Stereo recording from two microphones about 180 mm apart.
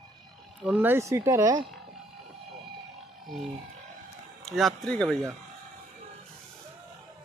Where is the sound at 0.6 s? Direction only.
10° right (ahead or behind).